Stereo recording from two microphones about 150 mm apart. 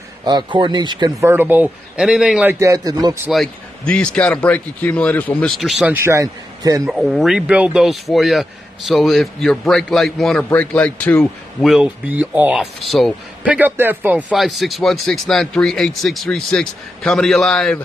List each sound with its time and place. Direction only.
0.2 s speech: 30° right (ahead or behind)
1.2 s a man's voice: 15° right (ahead or behind)
2.6 s speech: 25° right (ahead or behind)
3.3 s a man's voice: 5° left (ahead or behind)
5.6 s speech: centre (ahead or behind)
5.9 s speech: 20° right (ahead or behind)
6.9 s speech: centre (ahead or behind)
12.1 s a man's voice: 10° right (ahead or behind)
12.8 s a man's voice: centre (ahead or behind)
14.3 s speech: centre (ahead or behind)